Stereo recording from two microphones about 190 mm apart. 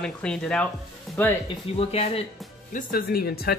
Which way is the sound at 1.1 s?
Centre (ahead or behind).